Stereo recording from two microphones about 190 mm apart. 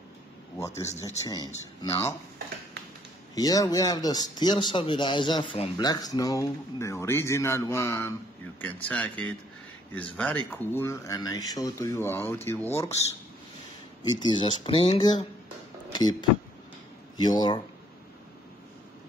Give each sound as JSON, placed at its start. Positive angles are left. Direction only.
{"t": 0.6, "sound": "speech", "side_deg": 15}
{"t": 3.3, "sound": "speech", "side_deg": 20}
{"t": 14.2, "sound": "speech", "side_deg": 25}
{"t": 15.9, "sound": "a sound", "side_deg": 20}
{"t": 17.2, "sound": "speech", "side_deg": 20}